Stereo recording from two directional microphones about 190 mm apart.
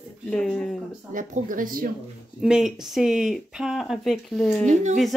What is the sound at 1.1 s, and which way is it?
Speech, 45° right (ahead or behind).